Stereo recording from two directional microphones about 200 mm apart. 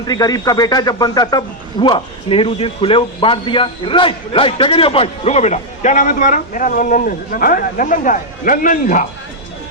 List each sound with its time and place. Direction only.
0.1 s a man's voice: 20° left (ahead or behind); by 9.0 s 40° left (ahead or behind)